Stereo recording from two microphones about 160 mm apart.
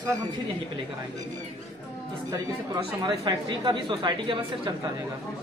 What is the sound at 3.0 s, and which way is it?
Speech, 25° right (ahead or behind).